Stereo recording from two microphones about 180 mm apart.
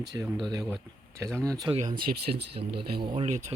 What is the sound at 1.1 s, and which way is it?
Speech, 15° right (ahead or behind).